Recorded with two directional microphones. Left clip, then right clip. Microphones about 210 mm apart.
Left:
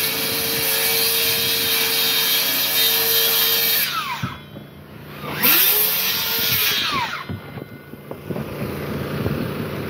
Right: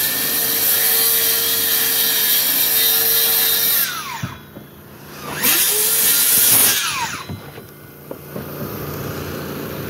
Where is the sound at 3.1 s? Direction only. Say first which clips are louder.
Left 1 dB; 50° left (ahead or behind).